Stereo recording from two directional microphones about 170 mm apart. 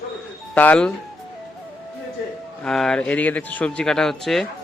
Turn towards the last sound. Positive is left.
turn(degrees=0)  # may be behind; listen again after turning